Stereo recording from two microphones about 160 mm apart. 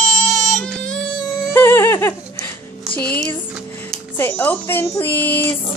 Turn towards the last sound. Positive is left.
turn(degrees=15)  # may be behind; listen again after turning